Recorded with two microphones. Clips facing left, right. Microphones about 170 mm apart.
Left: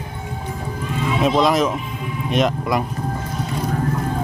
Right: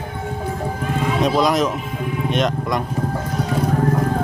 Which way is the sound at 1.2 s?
Centre (ahead or behind).